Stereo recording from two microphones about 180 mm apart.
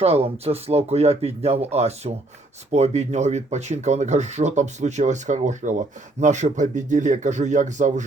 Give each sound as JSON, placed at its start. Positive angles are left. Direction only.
{"t": 0.0, "sound": "speech", "side_deg": -35}